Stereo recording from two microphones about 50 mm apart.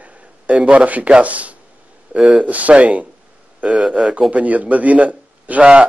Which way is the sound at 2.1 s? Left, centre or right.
Centre.